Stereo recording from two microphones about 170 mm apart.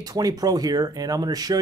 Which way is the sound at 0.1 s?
20° right (ahead or behind).